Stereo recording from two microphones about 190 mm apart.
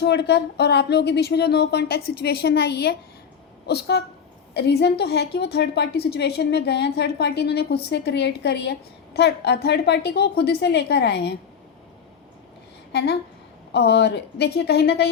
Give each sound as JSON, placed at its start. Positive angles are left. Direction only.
{"t": 0.0, "sound": "a woman's voice", "side_deg": 60}
{"t": 12.9, "sound": "a woman's voice", "side_deg": 60}